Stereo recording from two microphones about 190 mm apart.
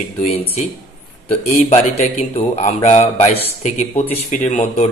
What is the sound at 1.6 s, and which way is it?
Speech, 30° left (ahead or behind).